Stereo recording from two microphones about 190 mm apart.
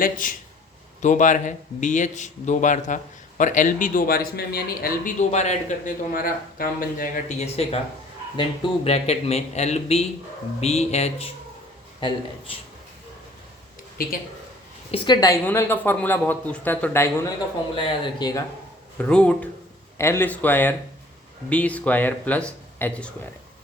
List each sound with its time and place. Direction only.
0.0 s a man's voice: 45° left (ahead or behind)
5.3 s speech: 35° left (ahead or behind)
14.0 s a man's voice: 50° left (ahead or behind)
14.8 s speech: 25° left (ahead or behind)
18.9 s speech: 5° left (ahead or behind)